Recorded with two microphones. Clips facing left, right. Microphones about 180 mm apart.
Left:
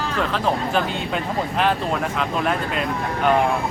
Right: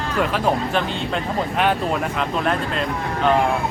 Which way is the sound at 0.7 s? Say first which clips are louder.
Even; centre (ahead or behind).